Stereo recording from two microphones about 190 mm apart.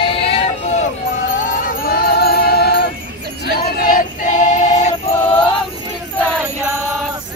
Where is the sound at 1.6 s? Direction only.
50° left (ahead or behind).